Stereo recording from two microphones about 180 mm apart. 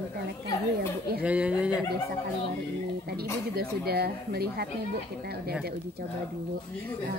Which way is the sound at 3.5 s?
60° right (ahead or behind).